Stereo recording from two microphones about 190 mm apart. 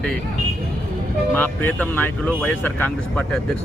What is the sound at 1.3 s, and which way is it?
Speech, 10° left (ahead or behind).